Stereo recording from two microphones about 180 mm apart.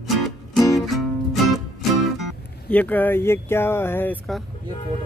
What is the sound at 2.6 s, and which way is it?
Speech, 10° left (ahead or behind).